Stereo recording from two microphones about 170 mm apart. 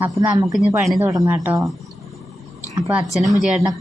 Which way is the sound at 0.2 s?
20° right (ahead or behind).